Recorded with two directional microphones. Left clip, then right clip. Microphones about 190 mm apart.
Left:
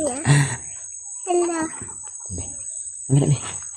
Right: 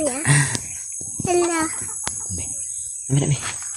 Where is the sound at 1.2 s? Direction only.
5° right (ahead or behind).